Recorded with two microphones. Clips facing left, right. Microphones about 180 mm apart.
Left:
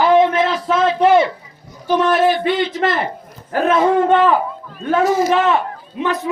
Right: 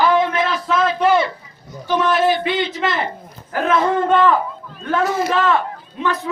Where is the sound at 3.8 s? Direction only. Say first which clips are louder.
Left 3 dB; 15° left (ahead or behind).